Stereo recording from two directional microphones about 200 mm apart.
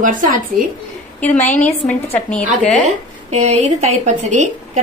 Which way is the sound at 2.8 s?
35° right (ahead or behind).